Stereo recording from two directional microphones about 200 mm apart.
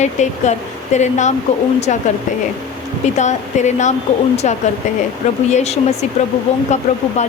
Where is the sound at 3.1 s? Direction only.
35° left (ahead or behind).